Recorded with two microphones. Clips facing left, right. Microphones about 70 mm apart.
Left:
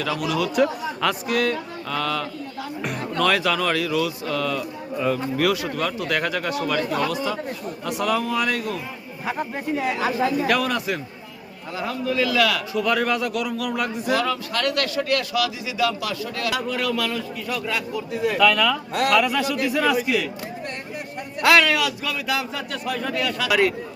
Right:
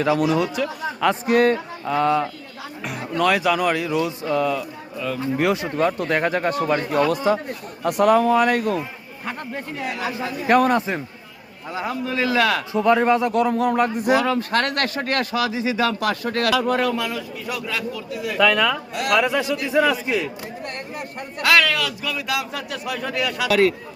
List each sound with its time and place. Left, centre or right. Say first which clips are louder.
0.0 s a man's voice: right 5 dB; right
1.5 s speech: right 5 dB; right
3.0 s a man's voice: right 2 dB; centre; by 8.8 s right
9.2 s a man's voice: left 3 dB; centre
9.8 s a man's voice: left 3 dB; left
10.4 s a man's voice: right 5 dB; right
14.1 s a man's voice: right 2 dB; right
14.3 s a man's voice: right 3 dB; right
17.1 s speech: left 1 dB; centre
17.9 s a man's voice: left 4 dB; left
18.3 s a man's voice: right 2 dB; right
21.4 s a man's voice: left 1 dB; centre
22.3 s speech: even; centre